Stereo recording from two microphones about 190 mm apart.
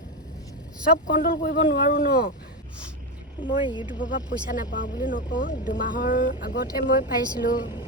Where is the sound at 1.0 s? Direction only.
45° left (ahead or behind).